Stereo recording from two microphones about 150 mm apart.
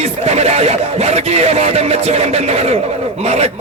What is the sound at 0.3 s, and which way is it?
Speech, 45° right (ahead or behind).